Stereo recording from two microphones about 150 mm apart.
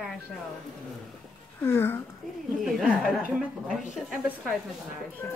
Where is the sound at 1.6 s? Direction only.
15° left (ahead or behind).